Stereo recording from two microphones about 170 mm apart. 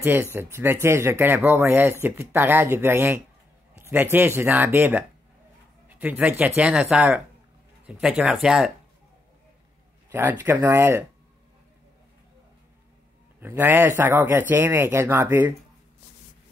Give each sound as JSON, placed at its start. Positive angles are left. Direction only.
{"t": 0.0, "sound": "speech", "side_deg": -15}
{"t": 10.1, "sound": "speech", "side_deg": -15}
{"t": 13.4, "sound": "speech", "side_deg": -10}